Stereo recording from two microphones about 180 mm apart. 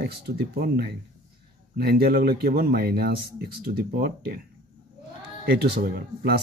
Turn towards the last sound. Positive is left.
turn(degrees=-60)  # may be behind; listen again after turning